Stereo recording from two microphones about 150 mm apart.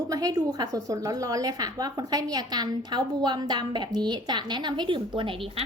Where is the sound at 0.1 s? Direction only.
25° right (ahead or behind).